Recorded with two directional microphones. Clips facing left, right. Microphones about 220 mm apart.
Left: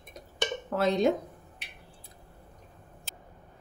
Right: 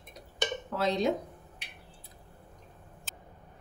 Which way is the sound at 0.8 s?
50° left (ahead or behind).